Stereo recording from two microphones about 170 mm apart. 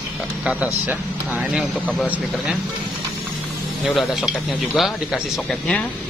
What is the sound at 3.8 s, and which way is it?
Speech, centre (ahead or behind).